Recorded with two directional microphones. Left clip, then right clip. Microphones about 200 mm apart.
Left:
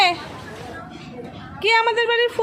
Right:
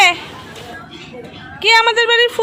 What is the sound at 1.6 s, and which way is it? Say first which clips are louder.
Speech: right 6 dB; centre (ahead or behind).